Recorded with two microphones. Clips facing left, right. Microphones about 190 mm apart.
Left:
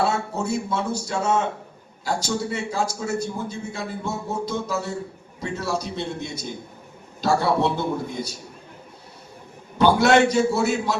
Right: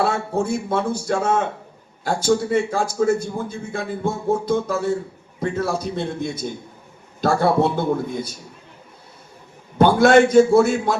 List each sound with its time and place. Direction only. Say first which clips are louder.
0.0 s a man's voice: right 3 dB; 55° right (ahead or behind)
9.7 s a man's voice: right 4 dB; 50° right (ahead or behind)